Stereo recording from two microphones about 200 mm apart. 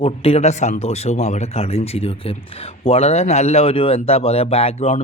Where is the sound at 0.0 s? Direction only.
30° left (ahead or behind).